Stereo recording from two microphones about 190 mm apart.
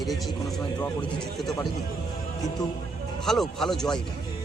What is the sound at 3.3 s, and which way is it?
Speech, centre (ahead or behind).